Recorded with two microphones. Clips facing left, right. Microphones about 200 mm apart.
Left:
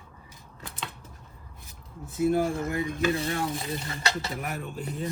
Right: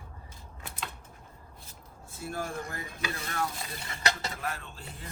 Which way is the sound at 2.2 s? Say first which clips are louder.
Left 11 dB; 20° left (ahead or behind).